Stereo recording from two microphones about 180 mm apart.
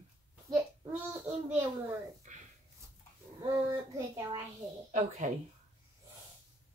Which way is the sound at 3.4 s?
15° right (ahead or behind).